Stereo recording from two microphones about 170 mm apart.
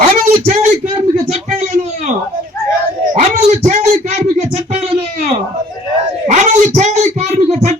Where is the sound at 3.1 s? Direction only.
45° right (ahead or behind).